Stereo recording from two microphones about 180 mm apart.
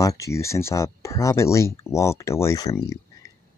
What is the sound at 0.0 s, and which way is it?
Speech, 20° left (ahead or behind).